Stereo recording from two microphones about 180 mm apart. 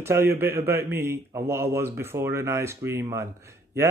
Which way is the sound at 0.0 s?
15° right (ahead or behind).